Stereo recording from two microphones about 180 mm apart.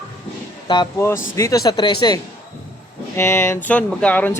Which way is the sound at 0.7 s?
25° left (ahead or behind).